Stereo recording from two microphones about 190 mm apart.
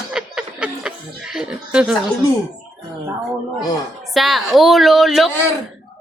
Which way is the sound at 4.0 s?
Centre (ahead or behind).